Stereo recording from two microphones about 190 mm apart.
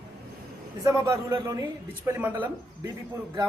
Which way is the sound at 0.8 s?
15° right (ahead or behind).